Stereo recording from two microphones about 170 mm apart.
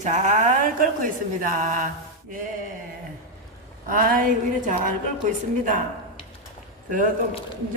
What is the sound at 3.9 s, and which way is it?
A woman's voice, 55° right (ahead or behind).